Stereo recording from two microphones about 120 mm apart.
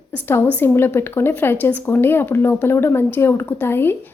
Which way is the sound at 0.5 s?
20° left (ahead or behind).